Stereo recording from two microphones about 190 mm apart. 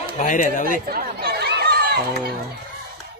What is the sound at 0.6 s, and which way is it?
Chatter, 50° right (ahead or behind).